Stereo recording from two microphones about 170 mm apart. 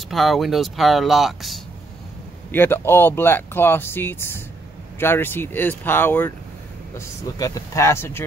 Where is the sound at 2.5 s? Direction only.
15° left (ahead or behind).